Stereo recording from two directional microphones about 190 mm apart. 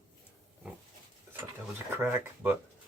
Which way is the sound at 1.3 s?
10° right (ahead or behind).